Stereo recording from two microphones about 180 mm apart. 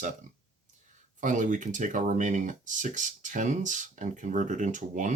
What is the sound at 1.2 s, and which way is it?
Speech, 45° right (ahead or behind).